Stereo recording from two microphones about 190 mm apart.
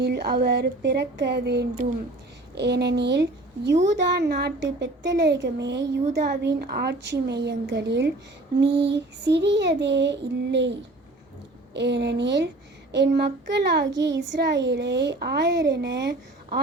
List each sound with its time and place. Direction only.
0.0 s speech: 60° right (ahead or behind)